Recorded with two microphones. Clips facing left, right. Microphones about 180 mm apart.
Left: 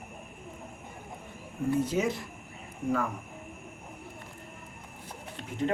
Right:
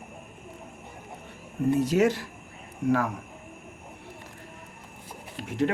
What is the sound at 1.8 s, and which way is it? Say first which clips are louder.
Speech: right 6 dB; 75° right (ahead or behind).